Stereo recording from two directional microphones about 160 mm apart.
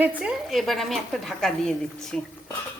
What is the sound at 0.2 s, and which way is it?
Speech, 5° right (ahead or behind).